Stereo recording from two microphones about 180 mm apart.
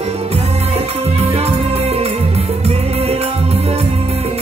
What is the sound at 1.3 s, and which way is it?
Music, 35° right (ahead or behind).